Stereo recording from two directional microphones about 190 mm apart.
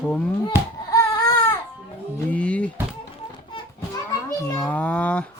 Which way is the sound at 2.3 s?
5° left (ahead or behind).